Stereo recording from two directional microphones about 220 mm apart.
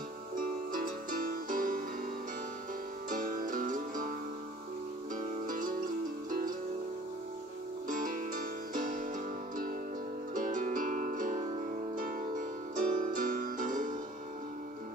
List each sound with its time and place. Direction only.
0.7 s music: 40° right (ahead or behind)
3.1 s music: 40° right (ahead or behind)
5.1 s music: 35° right (ahead or behind)
7.9 s music: 40° right (ahead or behind)
10.3 s music: 40° right (ahead or behind)